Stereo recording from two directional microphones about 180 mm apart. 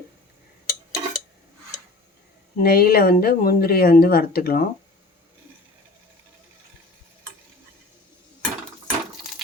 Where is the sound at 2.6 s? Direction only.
60° left (ahead or behind).